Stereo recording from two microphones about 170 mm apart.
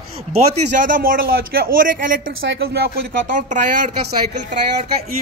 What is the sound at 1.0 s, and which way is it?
Speech, 60° right (ahead or behind).